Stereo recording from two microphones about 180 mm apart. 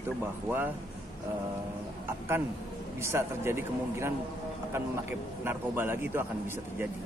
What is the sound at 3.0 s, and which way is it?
Speech, 15° right (ahead or behind).